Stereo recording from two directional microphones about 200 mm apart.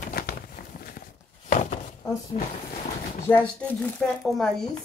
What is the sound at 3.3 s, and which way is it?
Speech, 5° left (ahead or behind).